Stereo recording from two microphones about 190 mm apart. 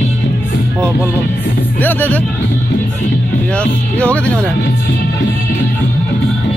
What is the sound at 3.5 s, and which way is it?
Speech, 5° left (ahead or behind).